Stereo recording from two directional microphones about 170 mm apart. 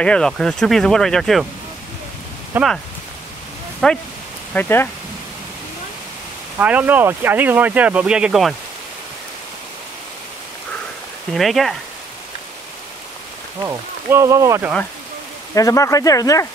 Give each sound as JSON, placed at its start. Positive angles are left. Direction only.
{"t": 0.0, "sound": "speech", "side_deg": 5}
{"t": 2.5, "sound": "speech", "side_deg": -10}
{"t": 3.8, "sound": "speech", "side_deg": 5}
{"t": 6.6, "sound": "speech", "side_deg": -10}
{"t": 11.3, "sound": "speech", "side_deg": 0}
{"t": 13.6, "sound": "speech", "side_deg": -15}
{"t": 15.5, "sound": "speech", "side_deg": 20}